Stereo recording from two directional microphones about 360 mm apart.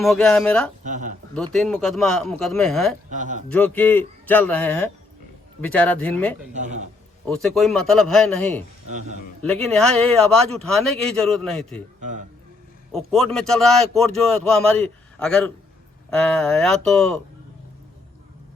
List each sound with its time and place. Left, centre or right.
0.0 s a man's voice: centre
0.9 s a man's voice: right
1.3 s a man's voice: centre
3.1 s a man's voice: right
3.5 s a man's voice: centre
6.5 s a man's voice: centre
7.3 s a man's voice: centre
8.9 s a man's voice: centre
9.4 s a man's voice: centre
11.9 s a man's voice: right
12.9 s a man's voice: centre